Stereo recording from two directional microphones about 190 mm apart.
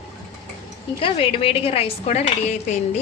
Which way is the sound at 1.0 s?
30° left (ahead or behind).